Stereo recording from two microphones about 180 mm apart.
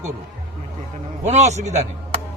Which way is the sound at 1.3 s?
40° right (ahead or behind).